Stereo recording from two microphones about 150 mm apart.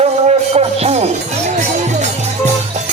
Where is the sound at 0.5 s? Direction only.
45° right (ahead or behind).